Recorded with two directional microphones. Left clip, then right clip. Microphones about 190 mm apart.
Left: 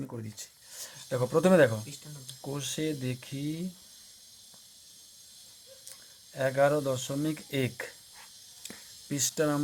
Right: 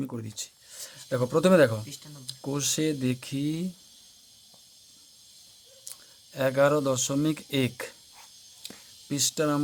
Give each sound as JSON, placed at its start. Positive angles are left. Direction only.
{"t": 0.0, "sound": "speech", "side_deg": -25}
{"t": 6.3, "sound": "speech", "side_deg": -25}